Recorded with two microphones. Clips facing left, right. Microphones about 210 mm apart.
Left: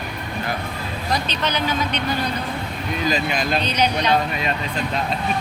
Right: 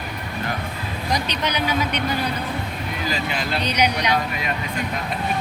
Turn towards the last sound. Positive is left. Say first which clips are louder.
# left 1 dB
turn(degrees=-15)  # may be behind; listen again after turning